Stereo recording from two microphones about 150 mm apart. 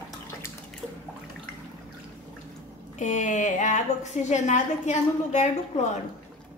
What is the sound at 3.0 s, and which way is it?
A woman's voice, 55° left (ahead or behind).